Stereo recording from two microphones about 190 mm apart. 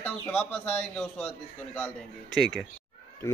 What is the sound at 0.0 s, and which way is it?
A man's voice, 5° left (ahead or behind).